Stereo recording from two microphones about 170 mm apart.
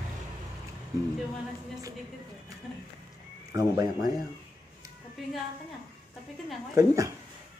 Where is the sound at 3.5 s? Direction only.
20° right (ahead or behind).